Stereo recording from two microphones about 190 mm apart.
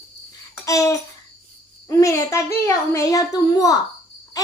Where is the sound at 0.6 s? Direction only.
15° left (ahead or behind).